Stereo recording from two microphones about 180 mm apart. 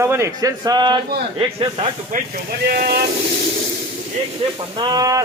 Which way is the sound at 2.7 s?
55° right (ahead or behind).